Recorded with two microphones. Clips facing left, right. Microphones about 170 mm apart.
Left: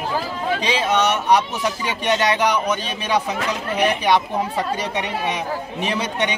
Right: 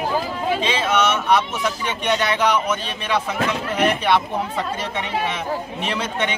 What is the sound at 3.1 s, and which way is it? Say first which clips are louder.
Speech: even; 15° left (ahead or behind).